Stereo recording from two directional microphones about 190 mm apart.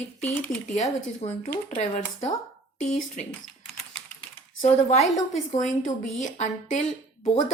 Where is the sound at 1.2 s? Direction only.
35° left (ahead or behind).